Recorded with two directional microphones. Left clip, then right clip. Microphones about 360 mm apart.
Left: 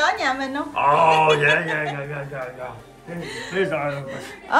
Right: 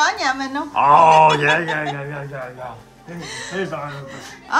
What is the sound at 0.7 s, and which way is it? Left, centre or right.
Speech, right.